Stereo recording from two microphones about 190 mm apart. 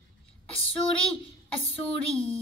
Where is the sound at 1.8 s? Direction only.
30° left (ahead or behind).